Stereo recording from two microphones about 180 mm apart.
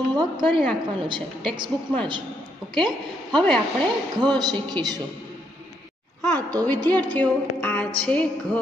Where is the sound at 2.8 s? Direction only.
5° left (ahead or behind).